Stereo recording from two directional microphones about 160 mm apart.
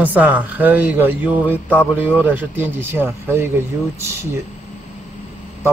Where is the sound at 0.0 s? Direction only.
10° right (ahead or behind).